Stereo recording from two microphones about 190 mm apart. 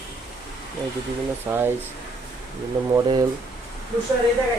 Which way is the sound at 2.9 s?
20° right (ahead or behind).